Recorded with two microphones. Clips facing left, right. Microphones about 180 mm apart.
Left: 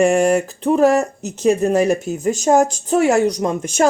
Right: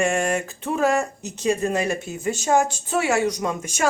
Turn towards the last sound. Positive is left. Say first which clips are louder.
# left 7 dB
turn(degrees=35)  # may be behind; listen again after turning